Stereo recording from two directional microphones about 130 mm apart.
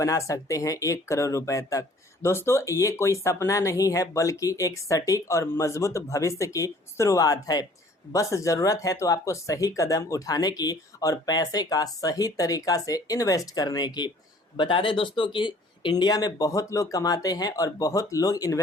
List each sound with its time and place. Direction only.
0.0 s speech: 25° left (ahead or behind)